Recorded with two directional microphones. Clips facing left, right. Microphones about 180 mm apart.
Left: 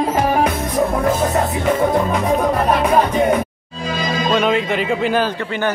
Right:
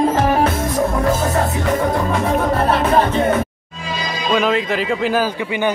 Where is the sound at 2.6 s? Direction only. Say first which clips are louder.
Even; 15° left (ahead or behind).